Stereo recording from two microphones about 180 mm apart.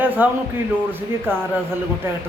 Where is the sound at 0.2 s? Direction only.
10° right (ahead or behind).